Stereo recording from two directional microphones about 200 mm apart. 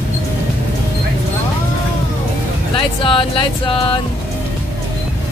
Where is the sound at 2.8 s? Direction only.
25° left (ahead or behind).